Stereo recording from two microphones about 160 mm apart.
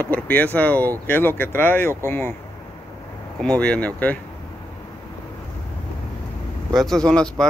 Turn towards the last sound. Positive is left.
turn(degrees=5)  # may be behind; listen again after turning